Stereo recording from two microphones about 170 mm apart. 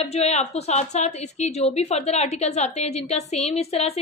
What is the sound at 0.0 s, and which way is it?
A woman's voice, 40° left (ahead or behind).